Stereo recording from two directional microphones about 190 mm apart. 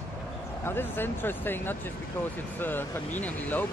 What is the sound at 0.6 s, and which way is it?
Speech, 10° left (ahead or behind).